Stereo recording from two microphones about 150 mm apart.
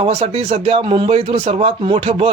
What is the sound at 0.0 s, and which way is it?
A man's voice, 40° right (ahead or behind).